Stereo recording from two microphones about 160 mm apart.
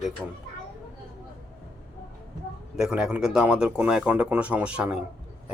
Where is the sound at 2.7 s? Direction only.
5° right (ahead or behind).